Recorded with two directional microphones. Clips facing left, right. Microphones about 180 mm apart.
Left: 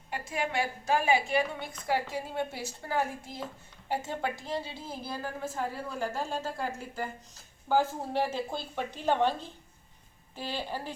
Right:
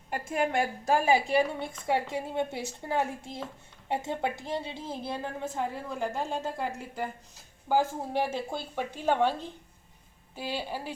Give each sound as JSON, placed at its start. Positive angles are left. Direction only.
{"t": 0.1, "sound": "a woman's voice", "side_deg": -50}